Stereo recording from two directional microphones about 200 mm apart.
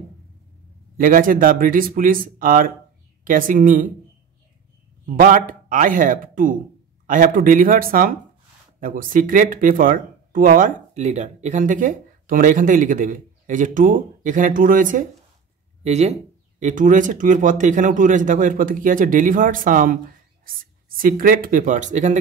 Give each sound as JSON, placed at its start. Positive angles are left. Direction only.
{"t": 0.9, "sound": "speech", "side_deg": -45}
{"t": 5.0, "sound": "speech", "side_deg": -40}